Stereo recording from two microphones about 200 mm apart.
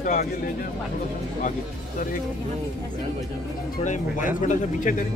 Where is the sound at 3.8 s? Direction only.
35° left (ahead or behind).